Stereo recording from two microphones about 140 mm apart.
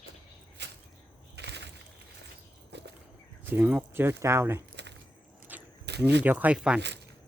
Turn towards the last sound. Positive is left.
turn(degrees=-5)  # may be behind; listen again after turning